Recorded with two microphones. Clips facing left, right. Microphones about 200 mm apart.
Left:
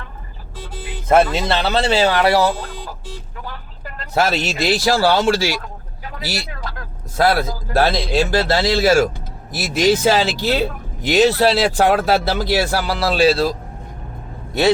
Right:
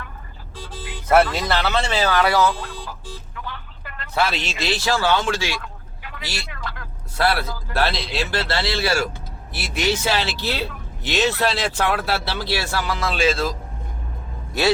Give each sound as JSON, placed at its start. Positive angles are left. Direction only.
{"t": 0.8, "sound": "speech", "side_deg": 20}
{"t": 2.5, "sound": "a sound", "side_deg": 40}
{"t": 3.4, "sound": "speech", "side_deg": 40}